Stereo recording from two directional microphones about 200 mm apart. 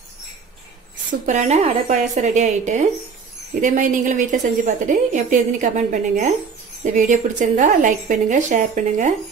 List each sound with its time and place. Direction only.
1.2 s a woman's voice: 35° right (ahead or behind)